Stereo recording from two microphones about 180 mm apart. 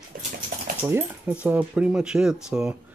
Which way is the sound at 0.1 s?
45° right (ahead or behind).